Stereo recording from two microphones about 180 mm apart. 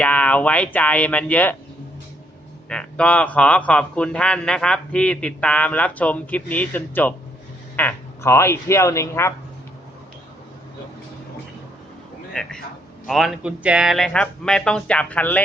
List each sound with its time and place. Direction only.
0.0 s speech: 10° left (ahead or behind)
2.6 s speech: 5° left (ahead or behind)
12.3 s a man's voice: 5° left (ahead or behind)